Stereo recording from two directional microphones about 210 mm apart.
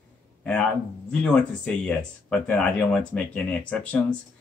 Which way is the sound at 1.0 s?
5° left (ahead or behind).